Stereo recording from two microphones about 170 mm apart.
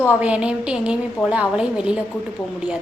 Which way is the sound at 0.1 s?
5° right (ahead or behind).